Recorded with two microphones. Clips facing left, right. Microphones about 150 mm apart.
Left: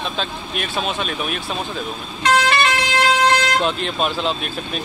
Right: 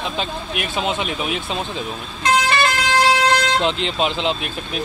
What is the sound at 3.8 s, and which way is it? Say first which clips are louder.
Speech: right 1 dB; 15° right (ahead or behind).